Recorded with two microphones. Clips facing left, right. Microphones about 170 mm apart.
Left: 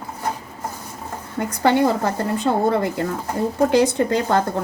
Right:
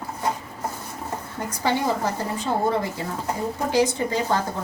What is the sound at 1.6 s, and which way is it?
A woman's voice, 60° left (ahead or behind).